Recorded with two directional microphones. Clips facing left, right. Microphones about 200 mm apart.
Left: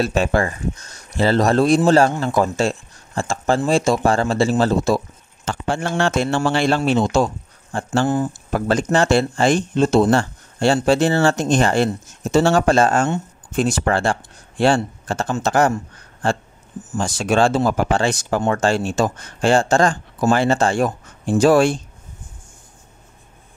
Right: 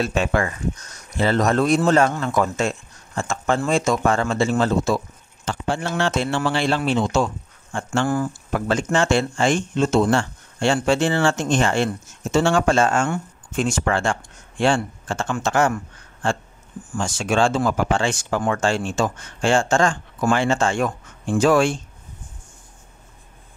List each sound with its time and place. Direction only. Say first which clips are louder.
0.0 s speech: left 3 dB; 35° left (ahead or behind)
5.5 s a man's voice: left 2 dB; 50° left (ahead or behind)
8.1 s speech: left 2 dB; 20° left (ahead or behind)
8.5 s speech: left 3 dB; 35° left (ahead or behind)